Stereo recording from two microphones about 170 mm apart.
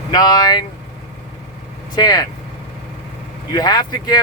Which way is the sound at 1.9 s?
25° left (ahead or behind).